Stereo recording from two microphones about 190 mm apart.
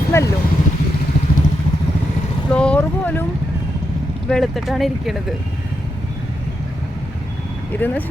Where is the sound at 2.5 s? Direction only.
5° left (ahead or behind).